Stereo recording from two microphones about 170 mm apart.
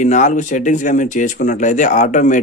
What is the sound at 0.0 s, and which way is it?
Speech, 45° left (ahead or behind).